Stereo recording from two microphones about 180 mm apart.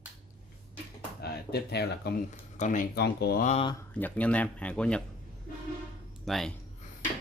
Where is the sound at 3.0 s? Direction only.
65° left (ahead or behind).